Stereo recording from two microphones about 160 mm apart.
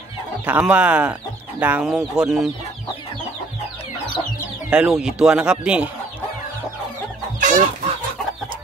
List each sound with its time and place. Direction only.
0.5 s speech: 10° right (ahead or behind)
4.6 s speech: 5° right (ahead or behind)
7.3 s chicken: 55° right (ahead or behind)